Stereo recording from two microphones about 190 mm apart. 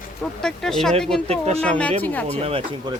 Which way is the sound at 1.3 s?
30° right (ahead or behind).